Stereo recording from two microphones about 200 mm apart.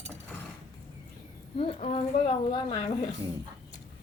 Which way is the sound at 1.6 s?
30° left (ahead or behind).